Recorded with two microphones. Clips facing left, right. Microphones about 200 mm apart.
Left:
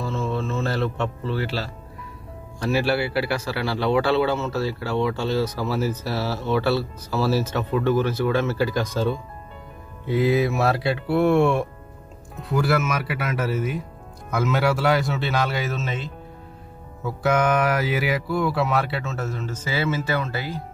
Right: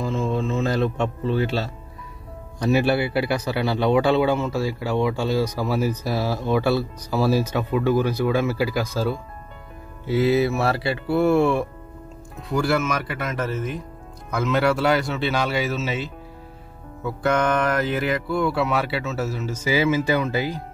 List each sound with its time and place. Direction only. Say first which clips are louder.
0.0 s music: right 2 dB; 15° right (ahead or behind)
2.6 s speech: right 2 dB; 20° right (ahead or behind)